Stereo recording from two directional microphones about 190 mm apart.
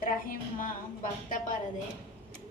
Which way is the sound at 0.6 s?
45° left (ahead or behind).